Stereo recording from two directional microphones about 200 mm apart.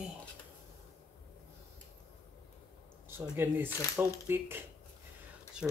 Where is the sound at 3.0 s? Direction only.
10° right (ahead or behind).